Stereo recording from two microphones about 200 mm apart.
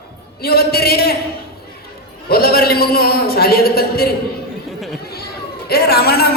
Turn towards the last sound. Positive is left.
turn(degrees=50)  # may be behind; listen again after turning